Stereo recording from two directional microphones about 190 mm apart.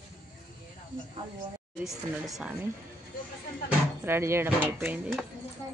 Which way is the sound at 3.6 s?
10° right (ahead or behind).